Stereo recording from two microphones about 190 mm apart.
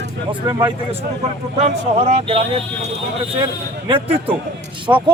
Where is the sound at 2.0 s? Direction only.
35° right (ahead or behind).